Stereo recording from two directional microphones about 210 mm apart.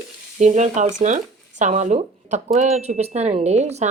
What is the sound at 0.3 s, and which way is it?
Speech, 35° right (ahead or behind).